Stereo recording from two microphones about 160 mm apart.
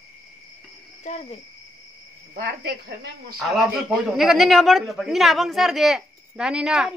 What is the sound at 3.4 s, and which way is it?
A man's voice, centre (ahead or behind).